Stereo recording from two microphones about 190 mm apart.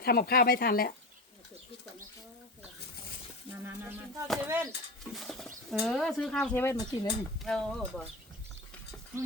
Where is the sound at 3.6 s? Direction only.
10° right (ahead or behind).